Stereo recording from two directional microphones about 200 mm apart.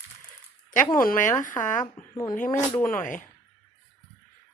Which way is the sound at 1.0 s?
40° left (ahead or behind).